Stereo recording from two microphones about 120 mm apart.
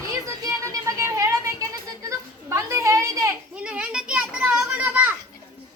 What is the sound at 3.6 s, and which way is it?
Children playing, 10° right (ahead or behind).